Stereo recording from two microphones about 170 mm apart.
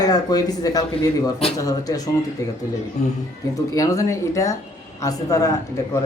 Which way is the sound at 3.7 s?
20° left (ahead or behind).